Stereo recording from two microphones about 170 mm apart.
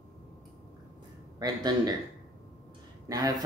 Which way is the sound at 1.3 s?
25° right (ahead or behind).